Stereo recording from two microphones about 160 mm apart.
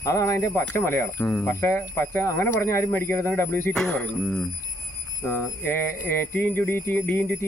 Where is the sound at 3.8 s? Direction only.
5° left (ahead or behind).